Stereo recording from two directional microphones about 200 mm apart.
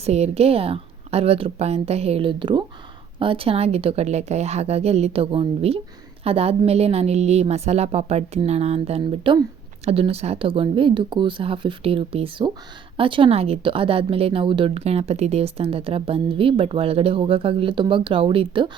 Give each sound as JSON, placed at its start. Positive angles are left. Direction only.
{"t": 0.0, "sound": "a woman's voice", "side_deg": -30}